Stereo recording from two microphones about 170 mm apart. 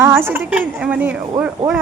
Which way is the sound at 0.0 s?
15° right (ahead or behind).